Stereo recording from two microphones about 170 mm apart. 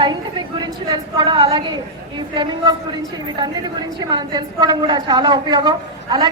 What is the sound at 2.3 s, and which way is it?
A woman's voice, 30° right (ahead or behind).